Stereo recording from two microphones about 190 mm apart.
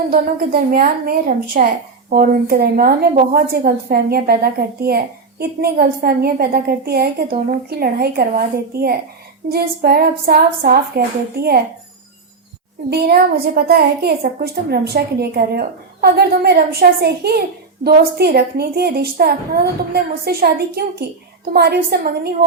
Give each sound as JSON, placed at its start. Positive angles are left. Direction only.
{"t": 0.1, "sound": "a woman's voice", "side_deg": -50}
{"t": 12.9, "sound": "a woman's voice", "side_deg": -55}